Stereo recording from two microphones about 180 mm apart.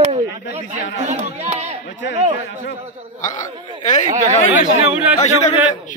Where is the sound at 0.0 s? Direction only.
35° right (ahead or behind).